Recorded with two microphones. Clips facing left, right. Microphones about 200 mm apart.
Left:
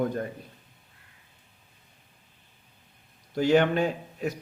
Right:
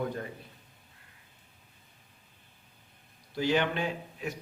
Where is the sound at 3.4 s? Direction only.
50° left (ahead or behind).